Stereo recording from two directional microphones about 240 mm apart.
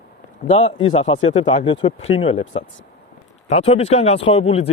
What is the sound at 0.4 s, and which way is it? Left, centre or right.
Speech, left.